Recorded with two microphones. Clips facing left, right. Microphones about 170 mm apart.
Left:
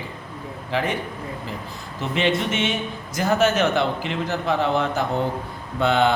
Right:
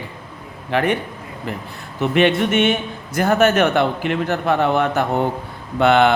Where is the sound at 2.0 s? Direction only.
60° right (ahead or behind).